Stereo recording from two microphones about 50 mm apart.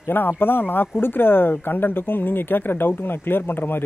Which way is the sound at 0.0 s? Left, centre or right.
Left.